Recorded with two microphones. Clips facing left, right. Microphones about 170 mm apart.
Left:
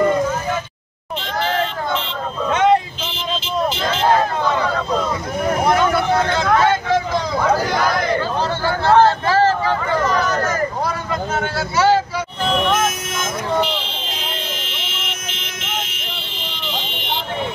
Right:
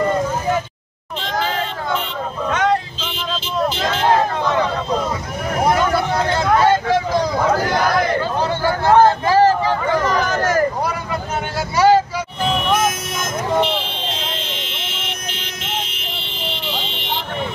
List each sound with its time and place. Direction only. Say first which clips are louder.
2.5 s vehicle: left 4 dB; 25° left (ahead or behind)
8.6 s vehicle: right 1 dB; 15° right (ahead or behind)
11.7 s vehicle: right 3 dB; 15° right (ahead or behind)